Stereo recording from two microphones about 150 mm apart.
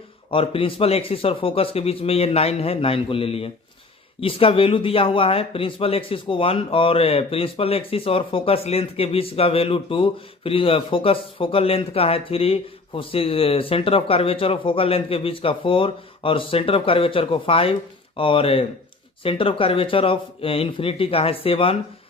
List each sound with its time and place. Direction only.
0.3 s speech: 35° left (ahead or behind)